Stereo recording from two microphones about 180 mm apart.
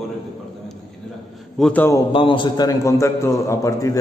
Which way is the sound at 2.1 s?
30° left (ahead or behind).